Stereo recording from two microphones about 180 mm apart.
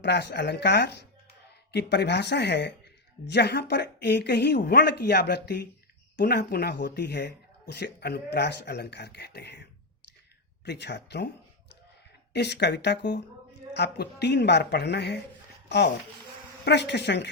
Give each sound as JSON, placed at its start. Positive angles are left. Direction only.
{"t": 0.0, "sound": "a woman's voice", "side_deg": 70}
{"t": 10.7, "sound": "a woman's voice", "side_deg": 70}
{"t": 12.3, "sound": "a woman's voice", "side_deg": 70}
{"t": 16.6, "sound": "a woman's voice", "side_deg": 70}